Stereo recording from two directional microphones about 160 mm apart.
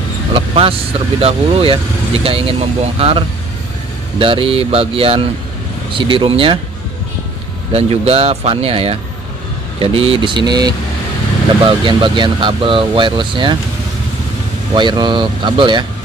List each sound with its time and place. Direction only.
0.3 s speech: 35° right (ahead or behind)
7.7 s speech: 40° right (ahead or behind)
14.7 s speech: 30° right (ahead or behind)